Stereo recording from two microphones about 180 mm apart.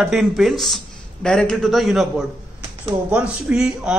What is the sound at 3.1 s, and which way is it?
Speech, 5° right (ahead or behind).